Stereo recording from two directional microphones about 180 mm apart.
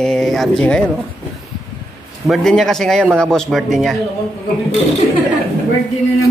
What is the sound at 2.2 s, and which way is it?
Speech, centre (ahead or behind).